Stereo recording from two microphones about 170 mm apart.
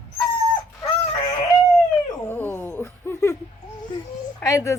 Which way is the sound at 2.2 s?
10° left (ahead or behind).